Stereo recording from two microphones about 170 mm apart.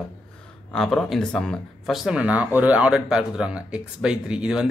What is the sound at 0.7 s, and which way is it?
Speech, centre (ahead or behind).